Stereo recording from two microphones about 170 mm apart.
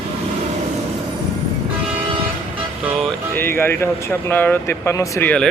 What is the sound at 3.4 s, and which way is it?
Speech, 15° left (ahead or behind).